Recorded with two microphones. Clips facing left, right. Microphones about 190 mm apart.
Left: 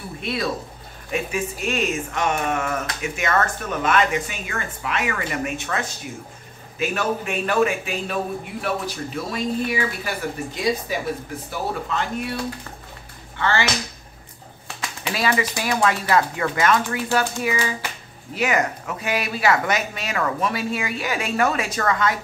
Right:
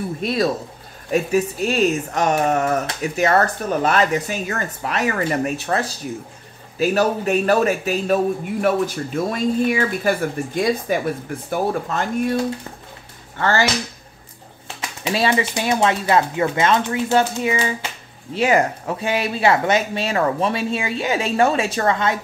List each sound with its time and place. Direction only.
0.2 s speech: 40° right (ahead or behind)
13.4 s speech: 40° right (ahead or behind)
14.8 s speech: 25° right (ahead or behind)